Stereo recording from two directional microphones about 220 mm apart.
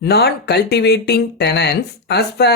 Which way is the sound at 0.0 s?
50° left (ahead or behind).